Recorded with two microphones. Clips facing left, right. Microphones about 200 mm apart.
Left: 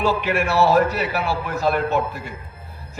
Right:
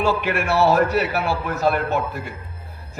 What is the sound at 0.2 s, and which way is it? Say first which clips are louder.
A man's voice: even; 55° right (ahead or behind).